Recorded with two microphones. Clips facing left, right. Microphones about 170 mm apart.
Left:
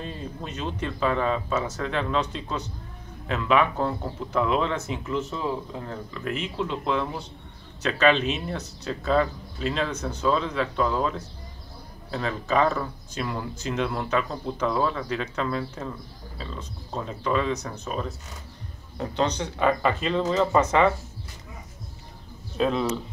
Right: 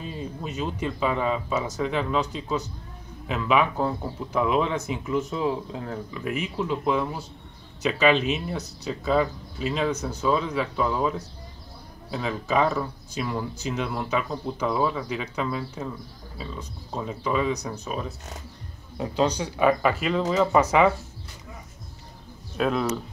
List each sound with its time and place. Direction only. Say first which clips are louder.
0.0 s speech: right 1 dB; 5° right (ahead or behind)
22.6 s speech: even; 5° right (ahead or behind)